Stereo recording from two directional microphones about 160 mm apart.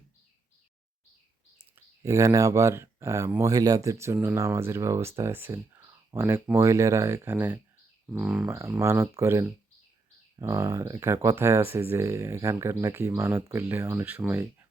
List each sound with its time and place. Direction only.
2.0 s speech: 20° right (ahead or behind)
8.5 s speech: 20° right (ahead or behind)